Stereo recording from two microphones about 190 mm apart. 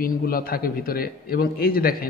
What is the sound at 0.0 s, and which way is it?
A man's voice, 50° left (ahead or behind).